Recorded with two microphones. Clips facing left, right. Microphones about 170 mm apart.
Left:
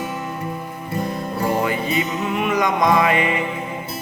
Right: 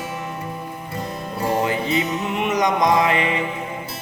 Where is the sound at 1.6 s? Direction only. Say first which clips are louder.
Even; 20° right (ahead or behind).